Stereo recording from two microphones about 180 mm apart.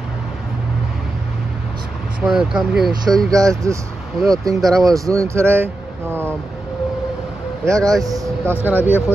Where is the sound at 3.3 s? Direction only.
20° right (ahead or behind).